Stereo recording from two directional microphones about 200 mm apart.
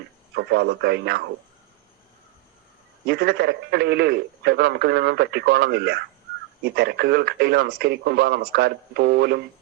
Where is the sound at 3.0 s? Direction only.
55° right (ahead or behind).